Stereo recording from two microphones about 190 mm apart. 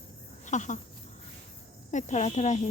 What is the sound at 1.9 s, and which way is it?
Speech, 40° left (ahead or behind).